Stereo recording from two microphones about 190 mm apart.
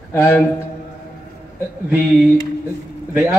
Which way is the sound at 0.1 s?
15° left (ahead or behind).